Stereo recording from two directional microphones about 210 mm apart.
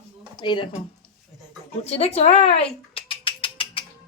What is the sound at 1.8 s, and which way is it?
Speech, 30° left (ahead or behind).